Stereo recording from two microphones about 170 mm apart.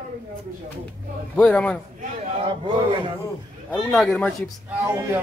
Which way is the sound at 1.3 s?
5° left (ahead or behind).